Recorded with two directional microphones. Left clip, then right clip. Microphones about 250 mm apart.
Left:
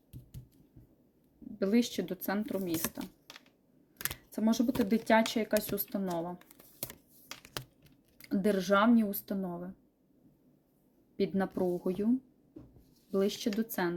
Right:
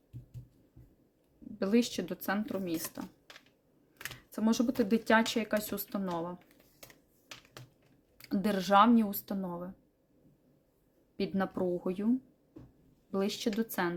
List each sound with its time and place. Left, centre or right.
1.5 s speech: centre
4.3 s speech: centre
8.2 s speech: centre
11.2 s speech: centre
13.1 s speech: centre